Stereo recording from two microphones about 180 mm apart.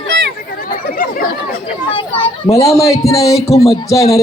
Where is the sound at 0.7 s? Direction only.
50° left (ahead or behind).